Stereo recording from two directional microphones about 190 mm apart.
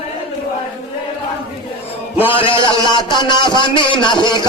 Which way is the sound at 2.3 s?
25° left (ahead or behind).